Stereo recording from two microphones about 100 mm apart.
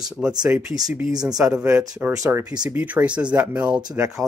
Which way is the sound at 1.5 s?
15° right (ahead or behind).